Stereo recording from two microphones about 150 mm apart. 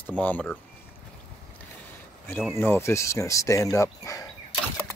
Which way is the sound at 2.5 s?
15° left (ahead or behind).